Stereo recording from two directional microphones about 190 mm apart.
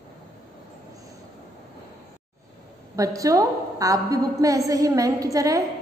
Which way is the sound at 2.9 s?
15° right (ahead or behind).